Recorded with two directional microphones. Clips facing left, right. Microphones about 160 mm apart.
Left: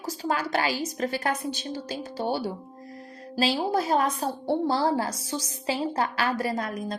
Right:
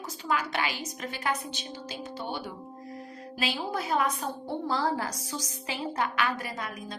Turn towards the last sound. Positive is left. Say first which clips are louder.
# left 8 dB
turn(degrees=40)  # may be behind; listen again after turning